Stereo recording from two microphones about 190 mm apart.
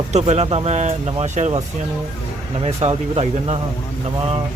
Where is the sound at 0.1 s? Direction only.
35° right (ahead or behind).